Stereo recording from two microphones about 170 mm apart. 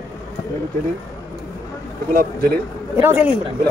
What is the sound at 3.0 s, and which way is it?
Speech, 15° right (ahead or behind).